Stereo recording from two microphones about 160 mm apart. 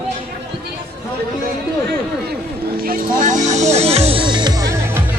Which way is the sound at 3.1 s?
55° right (ahead or behind).